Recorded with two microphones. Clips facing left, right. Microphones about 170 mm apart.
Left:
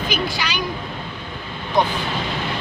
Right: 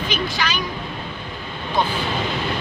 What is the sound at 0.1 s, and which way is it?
Speech, 10° left (ahead or behind).